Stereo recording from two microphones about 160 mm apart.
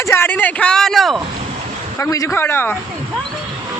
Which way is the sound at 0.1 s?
15° left (ahead or behind).